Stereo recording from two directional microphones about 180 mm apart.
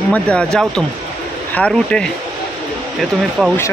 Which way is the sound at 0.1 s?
5° left (ahead or behind).